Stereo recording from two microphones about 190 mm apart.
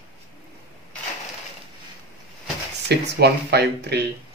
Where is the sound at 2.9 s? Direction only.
60° right (ahead or behind).